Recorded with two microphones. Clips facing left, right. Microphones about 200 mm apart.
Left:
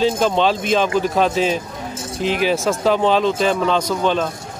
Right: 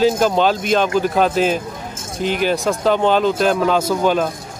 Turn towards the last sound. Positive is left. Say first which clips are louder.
# right 2 dB
turn(degrees=-5)  # may be behind; listen again after turning